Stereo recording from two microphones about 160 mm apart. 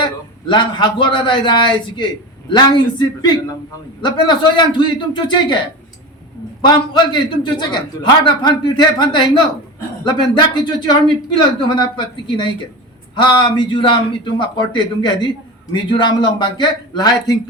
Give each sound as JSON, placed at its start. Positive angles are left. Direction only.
{"t": 0.0, "sound": "a man's voice", "side_deg": 30}
{"t": 6.7, "sound": "a man's voice", "side_deg": 30}